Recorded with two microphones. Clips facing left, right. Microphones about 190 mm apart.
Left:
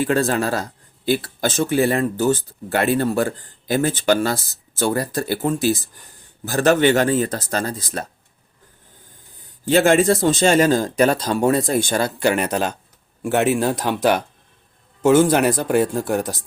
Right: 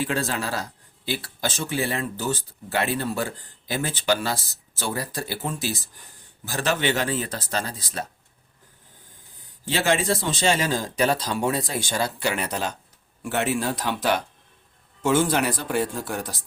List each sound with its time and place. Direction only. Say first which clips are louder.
0.0 s speech: left 7 dB; 50° left (ahead or behind)
9.6 s speech: left 8 dB; 50° left (ahead or behind)